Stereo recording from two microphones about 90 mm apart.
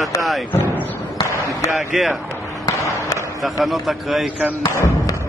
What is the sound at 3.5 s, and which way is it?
Speech, centre (ahead or behind).